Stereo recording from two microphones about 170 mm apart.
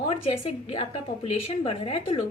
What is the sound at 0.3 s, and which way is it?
A woman's voice, 35° left (ahead or behind).